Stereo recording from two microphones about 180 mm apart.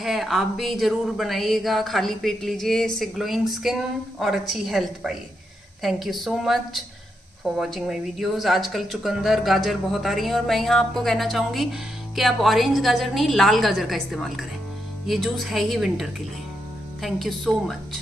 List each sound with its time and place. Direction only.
0.0 s speech: centre (ahead or behind)